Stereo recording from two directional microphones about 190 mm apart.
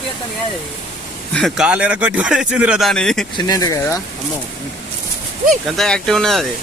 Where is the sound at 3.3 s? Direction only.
20° left (ahead or behind).